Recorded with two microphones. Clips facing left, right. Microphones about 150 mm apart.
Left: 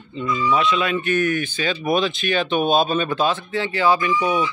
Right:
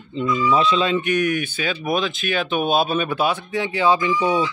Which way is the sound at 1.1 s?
10° right (ahead or behind).